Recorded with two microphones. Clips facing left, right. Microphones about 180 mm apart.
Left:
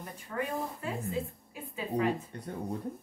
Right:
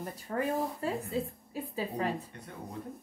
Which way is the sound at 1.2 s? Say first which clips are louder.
Right 5 dB; 35° right (ahead or behind).